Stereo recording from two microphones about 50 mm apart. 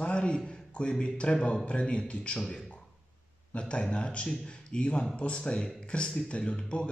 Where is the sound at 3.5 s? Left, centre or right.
Left.